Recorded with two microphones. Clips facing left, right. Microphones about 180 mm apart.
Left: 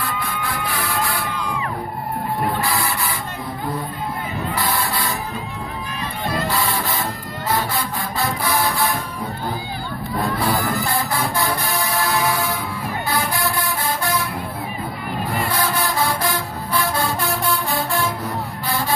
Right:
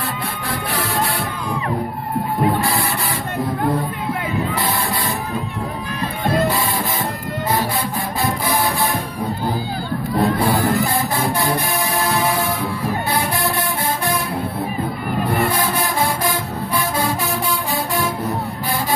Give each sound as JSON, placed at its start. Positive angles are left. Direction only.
{"t": 6.2, "sound": "music", "side_deg": -50}
{"t": 10.2, "sound": "music", "side_deg": -30}